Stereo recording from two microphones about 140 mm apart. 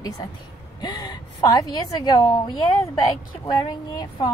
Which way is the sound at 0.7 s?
30° left (ahead or behind).